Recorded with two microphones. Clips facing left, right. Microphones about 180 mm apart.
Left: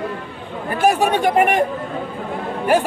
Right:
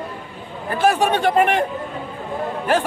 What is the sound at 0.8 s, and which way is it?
Speech, 15° left (ahead or behind).